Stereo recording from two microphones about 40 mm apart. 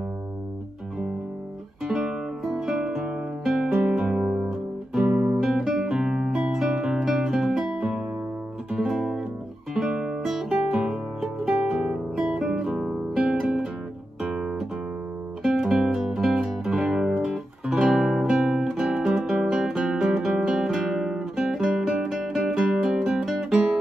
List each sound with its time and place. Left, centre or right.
1.9 s music: centre
3.4 s guitar: centre
3.8 s music: centre
4.5 s guitar: centre
6.4 s music: centre
9.9 s music: right
11.8 s guitar: centre
13.1 s music: right
14.3 s guitar: centre
15.4 s music: centre
18.3 s guitar: centre